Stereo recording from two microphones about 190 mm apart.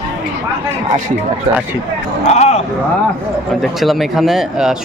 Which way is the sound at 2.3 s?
35° left (ahead or behind).